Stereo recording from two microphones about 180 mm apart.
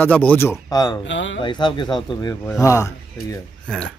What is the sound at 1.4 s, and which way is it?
Speech, 25° left (ahead or behind).